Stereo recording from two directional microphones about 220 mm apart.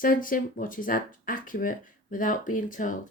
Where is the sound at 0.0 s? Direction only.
40° left (ahead or behind).